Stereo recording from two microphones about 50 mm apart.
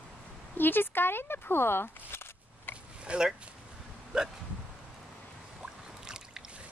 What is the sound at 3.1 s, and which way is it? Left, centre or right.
Speech, centre.